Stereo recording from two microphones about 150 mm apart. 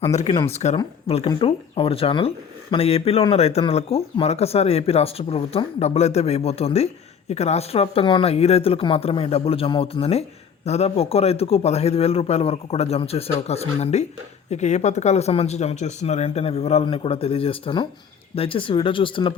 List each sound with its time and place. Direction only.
0.1 s speech: 50° left (ahead or behind)